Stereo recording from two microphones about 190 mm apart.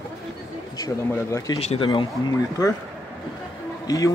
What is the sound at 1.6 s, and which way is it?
Speech, 30° left (ahead or behind).